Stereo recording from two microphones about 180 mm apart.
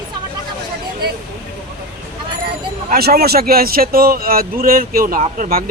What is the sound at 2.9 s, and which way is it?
A man's voice, 60° right (ahead or behind).